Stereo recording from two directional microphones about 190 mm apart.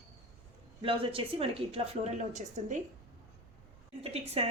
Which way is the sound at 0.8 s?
30° right (ahead or behind).